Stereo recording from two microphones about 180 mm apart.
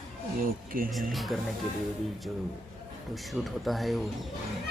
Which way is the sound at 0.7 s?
50° right (ahead or behind).